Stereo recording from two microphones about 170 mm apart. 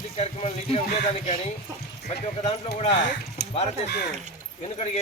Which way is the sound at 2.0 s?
40° left (ahead or behind).